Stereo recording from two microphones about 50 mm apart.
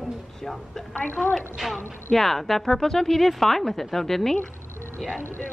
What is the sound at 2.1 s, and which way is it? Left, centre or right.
Speech, centre.